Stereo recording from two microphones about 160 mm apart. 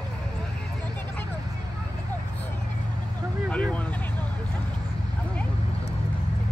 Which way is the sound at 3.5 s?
10° left (ahead or behind).